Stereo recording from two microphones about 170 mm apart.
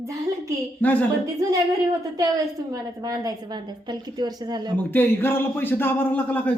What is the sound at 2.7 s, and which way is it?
A woman's voice, 20° right (ahead or behind).